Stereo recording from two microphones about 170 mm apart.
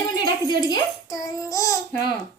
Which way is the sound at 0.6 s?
20° left (ahead or behind).